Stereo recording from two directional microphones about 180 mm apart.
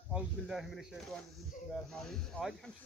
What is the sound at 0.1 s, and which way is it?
Speech, centre (ahead or behind).